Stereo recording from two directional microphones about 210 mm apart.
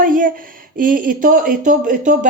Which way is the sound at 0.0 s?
40° right (ahead or behind).